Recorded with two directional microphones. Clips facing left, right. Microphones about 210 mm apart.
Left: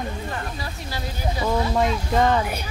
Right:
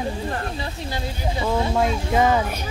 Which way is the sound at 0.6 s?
25° right (ahead or behind).